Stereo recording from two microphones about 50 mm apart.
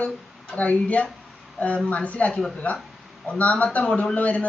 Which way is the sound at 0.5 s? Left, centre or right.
Left.